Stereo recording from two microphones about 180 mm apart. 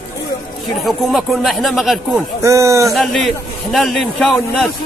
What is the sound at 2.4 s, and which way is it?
Speech, 15° right (ahead or behind).